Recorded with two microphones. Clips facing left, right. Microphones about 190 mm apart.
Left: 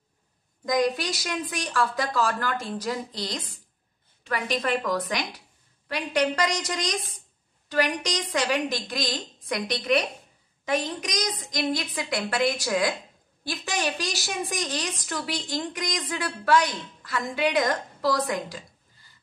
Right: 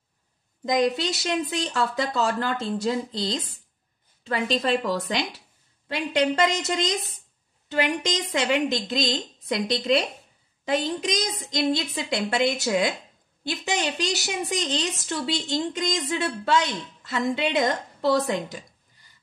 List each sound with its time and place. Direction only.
0.7 s a woman's voice: 25° right (ahead or behind)